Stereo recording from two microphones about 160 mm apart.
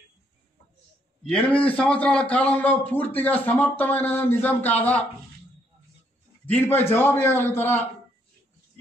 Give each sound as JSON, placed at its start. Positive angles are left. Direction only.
{"t": 1.3, "sound": "speech", "side_deg": 10}
{"t": 6.4, "sound": "speech", "side_deg": 10}